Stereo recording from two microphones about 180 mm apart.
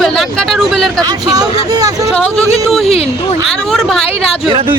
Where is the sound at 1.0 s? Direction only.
20° right (ahead or behind).